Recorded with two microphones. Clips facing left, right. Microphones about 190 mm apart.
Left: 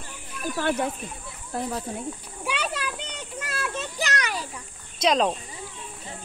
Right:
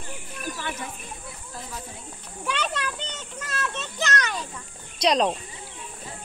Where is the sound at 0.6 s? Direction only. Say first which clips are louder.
Left 9 dB; 60° left (ahead or behind).